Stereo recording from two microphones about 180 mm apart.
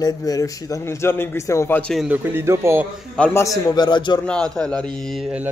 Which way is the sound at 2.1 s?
10° right (ahead or behind).